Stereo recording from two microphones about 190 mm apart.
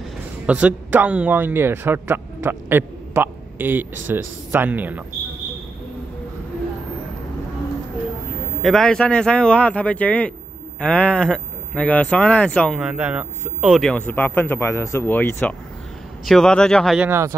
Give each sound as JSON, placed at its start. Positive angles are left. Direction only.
{"t": 0.5, "sound": "speech", "side_deg": -5}
{"t": 8.6, "sound": "speech", "side_deg": 5}
{"t": 17.1, "sound": "speech", "side_deg": -15}